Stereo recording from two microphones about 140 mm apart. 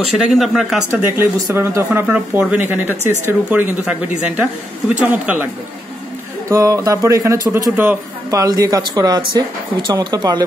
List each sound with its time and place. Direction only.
0.0 s speech: centre (ahead or behind)
0.9 s speech: 15° right (ahead or behind)
5.0 s speech: 10° right (ahead or behind)
6.5 s speech: 25° right (ahead or behind)